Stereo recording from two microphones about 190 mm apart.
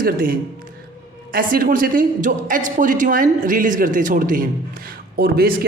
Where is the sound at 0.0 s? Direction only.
50° right (ahead or behind).